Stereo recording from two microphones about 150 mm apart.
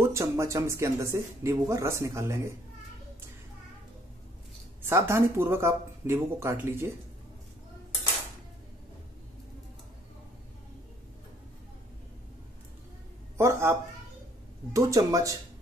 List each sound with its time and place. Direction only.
0.0 s speech: 20° right (ahead or behind)
4.8 s speech: 15° right (ahead or behind)
13.4 s a sound: 15° right (ahead or behind)
14.7 s speech: 20° right (ahead or behind)